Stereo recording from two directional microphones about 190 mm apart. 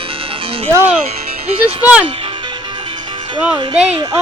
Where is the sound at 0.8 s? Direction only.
35° right (ahead or behind).